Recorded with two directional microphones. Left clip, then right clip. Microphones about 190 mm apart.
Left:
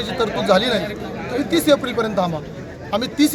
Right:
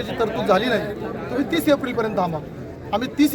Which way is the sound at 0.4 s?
25° right (ahead or behind).